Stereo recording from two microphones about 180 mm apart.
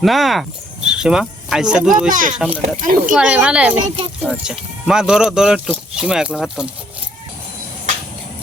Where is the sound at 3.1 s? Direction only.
5° right (ahead or behind).